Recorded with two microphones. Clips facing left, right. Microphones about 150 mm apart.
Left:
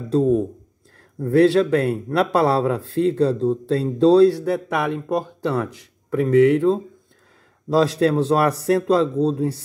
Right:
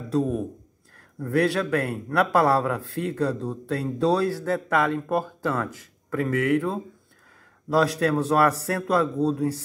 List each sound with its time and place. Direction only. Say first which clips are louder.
0.1 s speech: left 7 dB; 25° left (ahead or behind)
4.5 s speech: left 1 dB; 15° left (ahead or behind)